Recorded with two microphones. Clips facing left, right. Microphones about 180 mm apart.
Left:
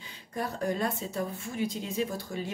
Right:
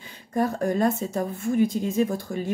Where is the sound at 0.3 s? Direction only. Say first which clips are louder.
Right 7 dB; 45° right (ahead or behind).